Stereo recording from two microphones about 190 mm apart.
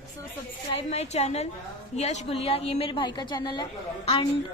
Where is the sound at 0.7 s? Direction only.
35° left (ahead or behind).